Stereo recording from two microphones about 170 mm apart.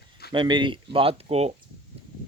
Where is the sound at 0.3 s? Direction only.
25° right (ahead or behind).